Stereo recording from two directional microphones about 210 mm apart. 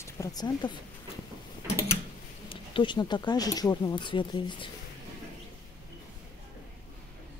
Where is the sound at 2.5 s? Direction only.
25° left (ahead or behind).